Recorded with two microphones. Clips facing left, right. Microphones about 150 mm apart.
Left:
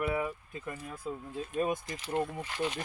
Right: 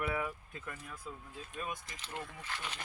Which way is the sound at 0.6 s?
25° left (ahead or behind).